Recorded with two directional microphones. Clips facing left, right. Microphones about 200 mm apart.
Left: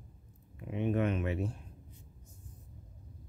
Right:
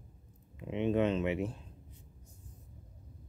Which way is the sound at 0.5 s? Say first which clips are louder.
Right 2 dB; 20° right (ahead or behind).